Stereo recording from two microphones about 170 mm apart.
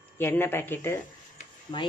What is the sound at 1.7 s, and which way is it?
Speech, 25° left (ahead or behind).